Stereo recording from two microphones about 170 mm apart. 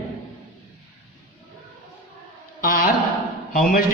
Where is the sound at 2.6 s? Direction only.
55° left (ahead or behind).